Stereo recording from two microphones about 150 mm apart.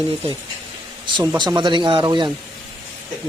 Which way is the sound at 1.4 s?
30° right (ahead or behind).